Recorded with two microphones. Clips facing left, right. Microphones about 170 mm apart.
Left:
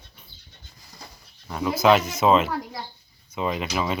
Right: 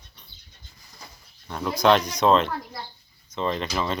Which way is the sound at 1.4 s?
5° left (ahead or behind).